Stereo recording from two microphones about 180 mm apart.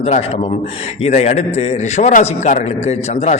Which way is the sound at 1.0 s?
40° left (ahead or behind).